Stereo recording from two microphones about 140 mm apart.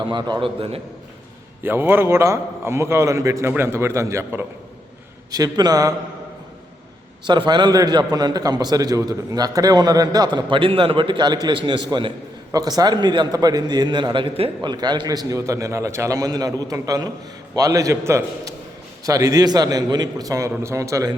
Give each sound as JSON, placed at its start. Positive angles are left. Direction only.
{"t": 0.0, "sound": "a man's voice", "side_deg": -30}
{"t": 1.6, "sound": "a man's voice", "side_deg": -15}
{"t": 7.3, "sound": "a man's voice", "side_deg": -35}